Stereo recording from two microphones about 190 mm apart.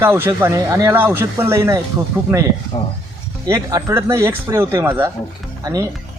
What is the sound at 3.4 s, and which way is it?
Speech, 20° right (ahead or behind).